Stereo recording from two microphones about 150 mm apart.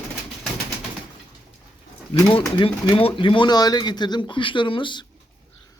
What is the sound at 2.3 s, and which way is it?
Speech, 35° left (ahead or behind).